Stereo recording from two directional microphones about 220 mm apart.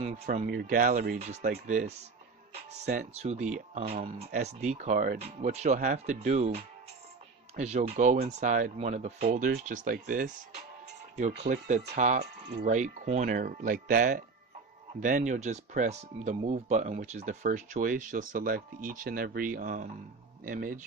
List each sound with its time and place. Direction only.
0.0 s speech: 30° right (ahead or behind)
12.2 s speech: 50° right (ahead or behind)
12.6 s speech: 35° right (ahead or behind)